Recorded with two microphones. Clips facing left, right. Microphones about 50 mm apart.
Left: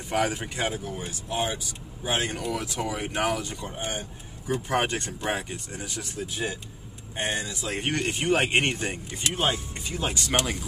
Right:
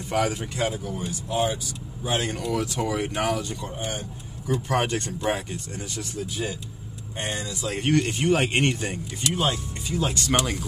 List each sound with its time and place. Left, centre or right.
0.1 s speech: centre
2.0 s speech: centre
3.6 s speech: centre
10.1 s speech: centre